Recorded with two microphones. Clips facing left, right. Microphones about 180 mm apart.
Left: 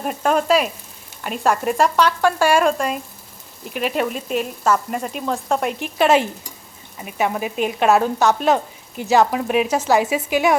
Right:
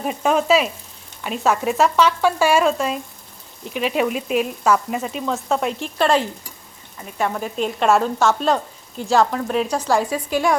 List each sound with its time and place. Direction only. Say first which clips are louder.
0.0 s speech: even; centre (ahead or behind)
8.5 s speech: left 2 dB; 20° left (ahead or behind)